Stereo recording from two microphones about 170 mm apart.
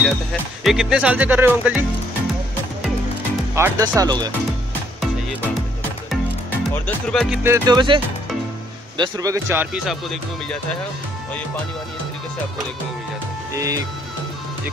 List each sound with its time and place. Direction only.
0.0 s speech: centre (ahead or behind)
3.5 s speech: 15° right (ahead or behind)
6.7 s speech: 5° left (ahead or behind)
7.4 s speech: 15° right (ahead or behind)
7.7 s speech: 25° right (ahead or behind)
13.6 s speech: 20° right (ahead or behind)